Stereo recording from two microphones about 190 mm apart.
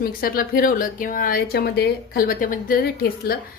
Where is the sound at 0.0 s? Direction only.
50° left (ahead or behind).